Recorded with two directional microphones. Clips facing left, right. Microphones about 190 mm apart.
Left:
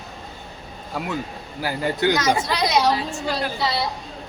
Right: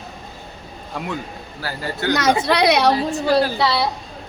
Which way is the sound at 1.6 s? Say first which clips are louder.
Left 3 dB; 15° left (ahead or behind).